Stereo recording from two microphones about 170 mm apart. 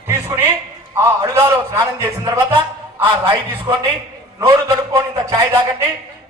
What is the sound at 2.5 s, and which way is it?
A man's voice, 30° right (ahead or behind).